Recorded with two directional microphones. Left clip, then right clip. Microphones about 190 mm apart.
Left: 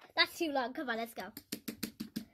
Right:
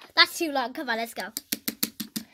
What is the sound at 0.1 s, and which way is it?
A woman's voice, 25° right (ahead or behind).